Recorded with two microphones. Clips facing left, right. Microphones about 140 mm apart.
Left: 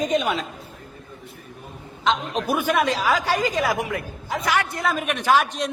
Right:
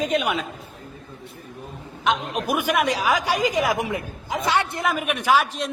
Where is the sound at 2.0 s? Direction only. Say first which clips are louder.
Left 1 dB; 10° right (ahead or behind).